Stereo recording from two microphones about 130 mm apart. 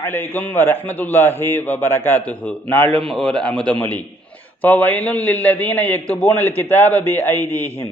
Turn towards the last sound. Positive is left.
turn(degrees=15)  # may be behind; listen again after turning